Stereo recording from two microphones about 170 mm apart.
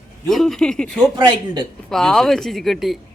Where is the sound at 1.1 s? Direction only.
30° right (ahead or behind).